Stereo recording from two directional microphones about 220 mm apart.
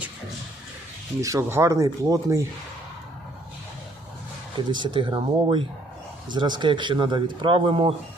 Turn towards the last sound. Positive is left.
turn(degrees=-25)  # may be behind; listen again after turning